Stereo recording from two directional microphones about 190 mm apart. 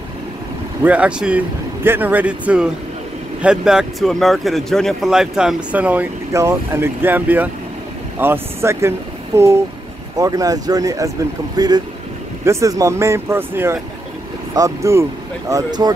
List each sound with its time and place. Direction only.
0.8 s speech: 5° right (ahead or behind)